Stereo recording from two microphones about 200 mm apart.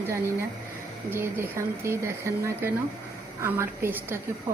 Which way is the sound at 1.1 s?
10° right (ahead or behind).